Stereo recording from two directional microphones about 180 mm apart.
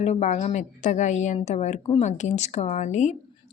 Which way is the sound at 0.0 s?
40° left (ahead or behind).